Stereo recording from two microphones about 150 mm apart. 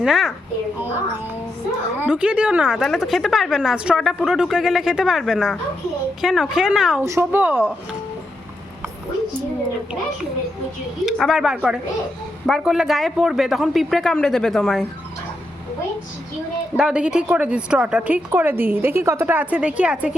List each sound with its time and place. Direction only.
0.0 s a woman's voice: centre (ahead or behind)
2.0 s a woman's voice: 10° right (ahead or behind)
7.0 s a woman's voice: 15° right (ahead or behind)
11.0 s a woman's voice: 5° right (ahead or behind)
16.7 s a woman's voice: 5° right (ahead or behind)